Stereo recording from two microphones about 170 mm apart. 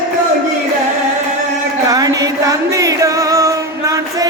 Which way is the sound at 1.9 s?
20° right (ahead or behind).